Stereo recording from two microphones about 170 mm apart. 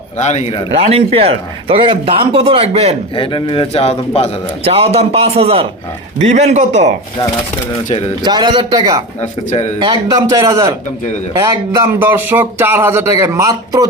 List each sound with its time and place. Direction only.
0.2 s speech: 40° left (ahead or behind)
0.8 s a man's voice: 35° right (ahead or behind)
3.2 s a man's voice: 30° left (ahead or behind)
4.6 s a man's voice: 35° right (ahead or behind)
8.2 s speech: 25° right (ahead or behind)